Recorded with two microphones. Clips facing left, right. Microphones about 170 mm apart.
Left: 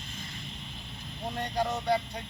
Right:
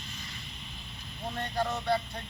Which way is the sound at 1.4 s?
15° left (ahead or behind).